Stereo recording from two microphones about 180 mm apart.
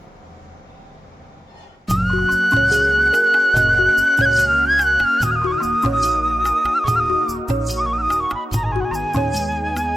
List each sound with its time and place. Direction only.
1.9 s music: centre (ahead or behind)